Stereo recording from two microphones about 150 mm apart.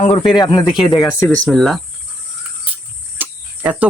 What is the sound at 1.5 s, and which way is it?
Speech, centre (ahead or behind).